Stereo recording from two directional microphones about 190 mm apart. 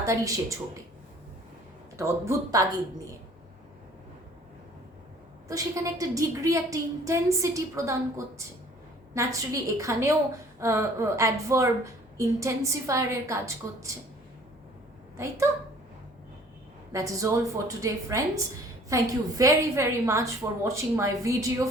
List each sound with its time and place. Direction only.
0.0 s a woman's voice: 15° right (ahead or behind)
2.0 s a woman's voice: 15° right (ahead or behind)
5.5 s a woman's voice: 15° right (ahead or behind)
9.1 s a woman's voice: 15° right (ahead or behind)
15.1 s a woman's voice: 15° right (ahead or behind)
16.9 s a woman's voice: 15° right (ahead or behind)